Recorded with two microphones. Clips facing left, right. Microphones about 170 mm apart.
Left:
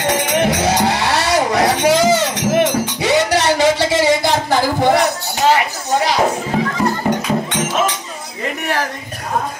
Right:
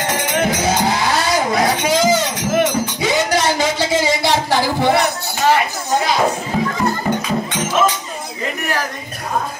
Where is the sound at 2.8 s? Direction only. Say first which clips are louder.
Left 3 dB; 70° left (ahead or behind).